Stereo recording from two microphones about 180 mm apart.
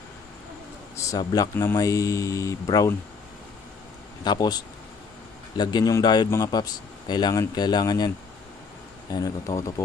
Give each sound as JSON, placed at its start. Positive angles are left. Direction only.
{"t": 0.9, "sound": "speech", "side_deg": 20}
{"t": 4.2, "sound": "speech", "side_deg": 20}
{"t": 9.1, "sound": "speech", "side_deg": 20}